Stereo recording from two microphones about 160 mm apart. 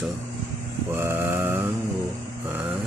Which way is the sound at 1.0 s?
15° right (ahead or behind).